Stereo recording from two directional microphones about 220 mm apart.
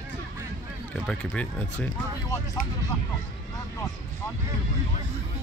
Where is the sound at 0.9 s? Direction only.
5° left (ahead or behind).